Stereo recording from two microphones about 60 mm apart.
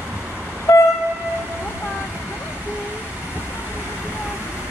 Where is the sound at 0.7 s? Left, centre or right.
Left.